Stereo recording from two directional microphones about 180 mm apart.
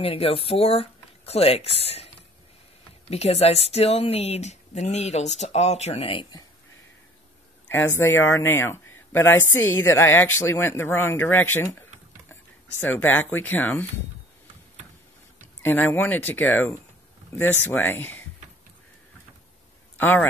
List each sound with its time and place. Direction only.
0.0 s speech: 30° left (ahead or behind)
3.1 s speech: 35° left (ahead or behind)
7.9 s a woman's voice: 15° left (ahead or behind)
12.8 s a woman's voice: 10° left (ahead or behind)
15.6 s a woman's voice: 10° left (ahead or behind)
20.0 s a woman's voice: 10° left (ahead or behind)